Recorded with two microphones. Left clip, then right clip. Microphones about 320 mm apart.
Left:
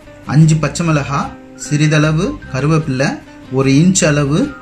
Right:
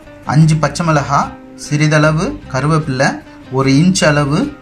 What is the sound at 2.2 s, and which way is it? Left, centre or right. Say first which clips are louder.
Speech: right 1 dB; right.